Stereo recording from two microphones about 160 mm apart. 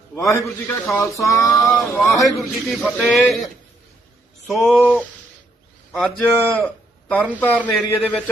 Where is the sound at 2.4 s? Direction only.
Centre (ahead or behind).